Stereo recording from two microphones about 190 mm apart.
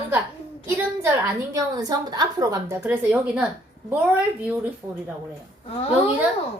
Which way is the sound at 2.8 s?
5° right (ahead or behind).